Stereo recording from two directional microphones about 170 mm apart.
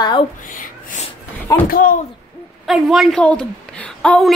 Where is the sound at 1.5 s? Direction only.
20° left (ahead or behind).